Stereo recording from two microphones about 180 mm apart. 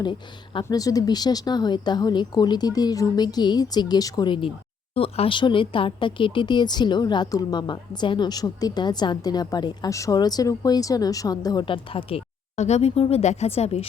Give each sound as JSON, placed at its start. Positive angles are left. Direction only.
{"t": 0.0, "sound": "speech", "side_deg": 25}